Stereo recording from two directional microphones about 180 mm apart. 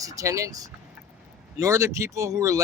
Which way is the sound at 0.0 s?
20° right (ahead or behind).